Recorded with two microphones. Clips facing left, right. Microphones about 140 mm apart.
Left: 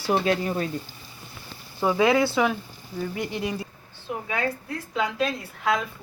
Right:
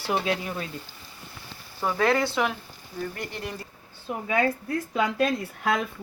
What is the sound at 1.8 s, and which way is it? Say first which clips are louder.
Speech: left 3 dB; 10° left (ahead or behind).